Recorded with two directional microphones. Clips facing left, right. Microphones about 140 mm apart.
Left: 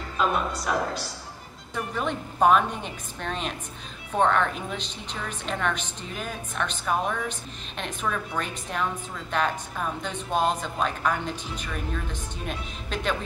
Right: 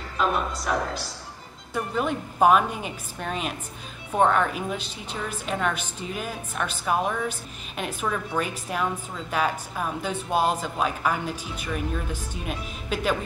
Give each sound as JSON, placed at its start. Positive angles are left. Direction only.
{"t": 0.2, "sound": "a woman's voice", "side_deg": 0}